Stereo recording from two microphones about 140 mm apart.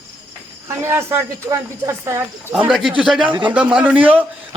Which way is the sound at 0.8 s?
15° right (ahead or behind).